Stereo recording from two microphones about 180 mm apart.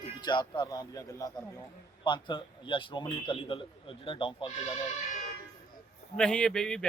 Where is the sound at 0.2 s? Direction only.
25° left (ahead or behind).